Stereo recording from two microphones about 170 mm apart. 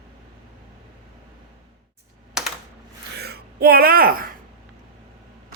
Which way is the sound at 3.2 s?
65° right (ahead or behind).